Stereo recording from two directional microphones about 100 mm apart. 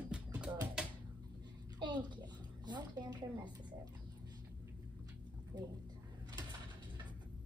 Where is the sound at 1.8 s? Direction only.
45° right (ahead or behind).